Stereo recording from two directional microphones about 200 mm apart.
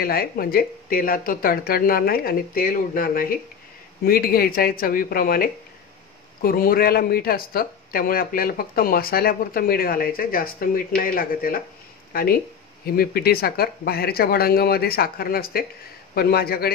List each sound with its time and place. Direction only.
0.0 s a man's voice: 50° left (ahead or behind)